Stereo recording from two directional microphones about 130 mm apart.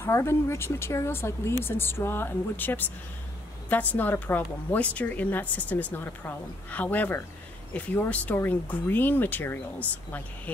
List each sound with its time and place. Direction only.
0.0 s a woman's voice: 20° left (ahead or behind)